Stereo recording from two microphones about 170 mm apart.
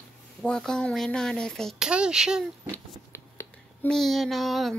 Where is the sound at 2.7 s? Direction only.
15° left (ahead or behind).